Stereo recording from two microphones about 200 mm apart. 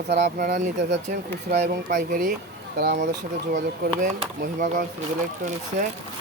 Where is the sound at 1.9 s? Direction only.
40° right (ahead or behind).